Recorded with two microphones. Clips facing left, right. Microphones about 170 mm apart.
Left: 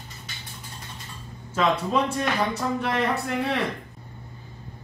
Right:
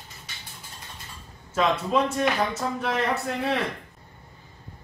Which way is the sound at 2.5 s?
Centre (ahead or behind).